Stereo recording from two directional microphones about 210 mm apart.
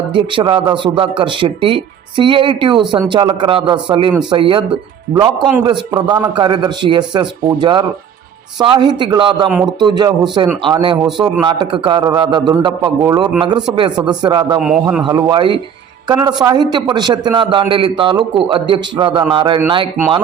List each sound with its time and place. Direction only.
0.1 s a man's voice: 25° right (ahead or behind)
14.6 s a man's voice: 5° right (ahead or behind)
15.0 s a man's voice: 20° right (ahead or behind)